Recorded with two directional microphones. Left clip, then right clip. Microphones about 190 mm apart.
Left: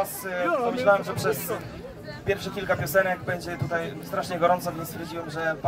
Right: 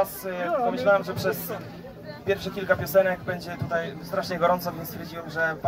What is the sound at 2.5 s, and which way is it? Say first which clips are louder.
A man's voice: right 3 dB; 10° right (ahead or behind).